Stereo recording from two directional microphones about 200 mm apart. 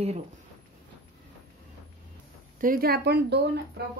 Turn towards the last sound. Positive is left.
turn(degrees=-55)  # may be behind; listen again after turning